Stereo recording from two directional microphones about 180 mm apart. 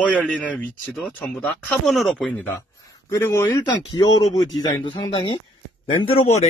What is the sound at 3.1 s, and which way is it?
Speech, 15° left (ahead or behind).